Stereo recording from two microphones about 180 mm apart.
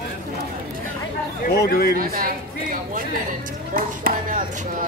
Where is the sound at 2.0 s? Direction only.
50° right (ahead or behind).